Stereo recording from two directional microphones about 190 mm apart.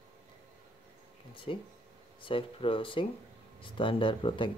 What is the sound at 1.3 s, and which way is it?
Speech, 25° left (ahead or behind).